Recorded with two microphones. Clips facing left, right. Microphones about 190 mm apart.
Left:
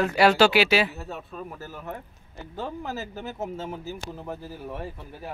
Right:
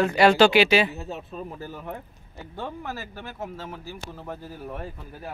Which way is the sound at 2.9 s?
20° left (ahead or behind).